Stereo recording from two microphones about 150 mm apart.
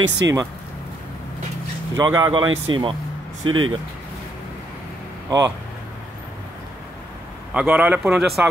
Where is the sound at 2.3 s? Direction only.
35° right (ahead or behind).